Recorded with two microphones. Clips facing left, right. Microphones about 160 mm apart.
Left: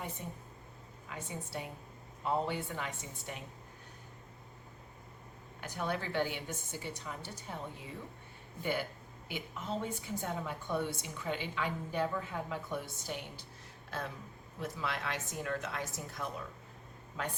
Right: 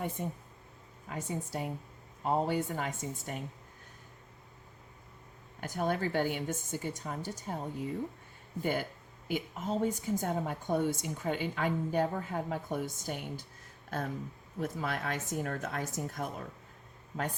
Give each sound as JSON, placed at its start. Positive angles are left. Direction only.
{"t": 0.2, "sound": "a woman's voice", "side_deg": -50}
{"t": 5.5, "sound": "a woman's voice", "side_deg": -45}
{"t": 14.6, "sound": "a woman's voice", "side_deg": -45}